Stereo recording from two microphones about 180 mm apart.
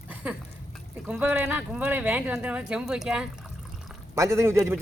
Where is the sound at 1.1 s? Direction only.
10° right (ahead or behind).